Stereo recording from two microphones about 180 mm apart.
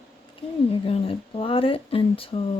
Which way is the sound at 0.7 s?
30° left (ahead or behind).